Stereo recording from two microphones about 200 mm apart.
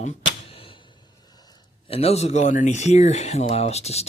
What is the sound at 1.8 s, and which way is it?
Speech, 30° left (ahead or behind).